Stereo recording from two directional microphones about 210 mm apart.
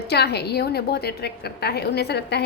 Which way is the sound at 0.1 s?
50° left (ahead or behind).